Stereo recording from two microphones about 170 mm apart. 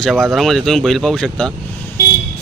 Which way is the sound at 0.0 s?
5° left (ahead or behind).